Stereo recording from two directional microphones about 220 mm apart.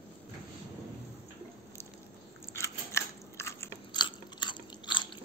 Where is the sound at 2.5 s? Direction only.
15° left (ahead or behind).